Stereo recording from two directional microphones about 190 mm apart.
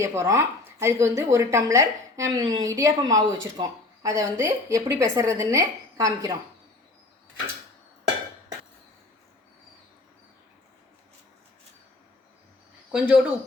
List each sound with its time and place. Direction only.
0.0 s speech: 15° right (ahead or behind)
12.9 s speech: 5° right (ahead or behind)